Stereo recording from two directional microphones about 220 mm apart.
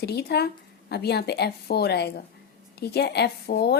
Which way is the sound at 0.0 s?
45° left (ahead or behind).